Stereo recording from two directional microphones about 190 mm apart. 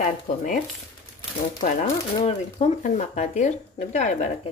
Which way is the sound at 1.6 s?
40° left (ahead or behind).